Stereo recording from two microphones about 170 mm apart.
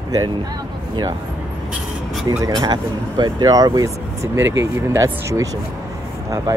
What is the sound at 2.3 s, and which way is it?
Speech, 20° right (ahead or behind).